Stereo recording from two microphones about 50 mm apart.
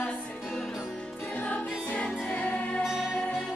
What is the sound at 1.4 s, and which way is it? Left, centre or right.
Music, left.